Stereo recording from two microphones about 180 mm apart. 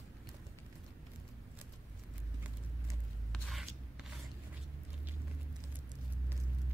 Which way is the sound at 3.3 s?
Centre (ahead or behind).